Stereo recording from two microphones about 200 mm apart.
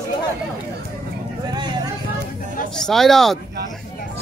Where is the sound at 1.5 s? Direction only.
20° right (ahead or behind).